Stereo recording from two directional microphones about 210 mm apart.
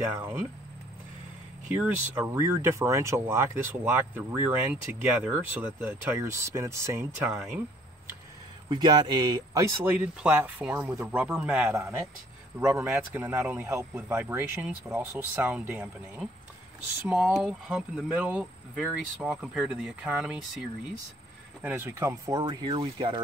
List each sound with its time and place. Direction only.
1.8 s speech: 10° right (ahead or behind)
8.6 s speech: 20° right (ahead or behind); by 20.3 s 5° right (ahead or behind)
21.6 s speech: 10° right (ahead or behind)